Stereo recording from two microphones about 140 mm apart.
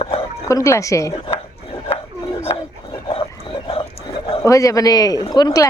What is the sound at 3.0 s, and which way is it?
Dog, 40° left (ahead or behind).